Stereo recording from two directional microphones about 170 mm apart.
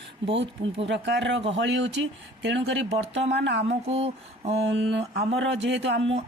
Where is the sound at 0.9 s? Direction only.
90° right.